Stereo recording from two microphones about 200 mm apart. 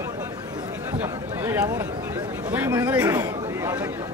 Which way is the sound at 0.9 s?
10° right (ahead or behind).